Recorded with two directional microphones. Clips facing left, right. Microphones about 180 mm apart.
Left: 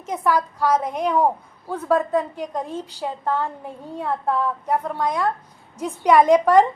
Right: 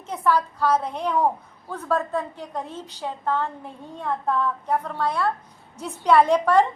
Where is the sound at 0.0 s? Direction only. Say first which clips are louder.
Left 1 dB; 10° left (ahead or behind).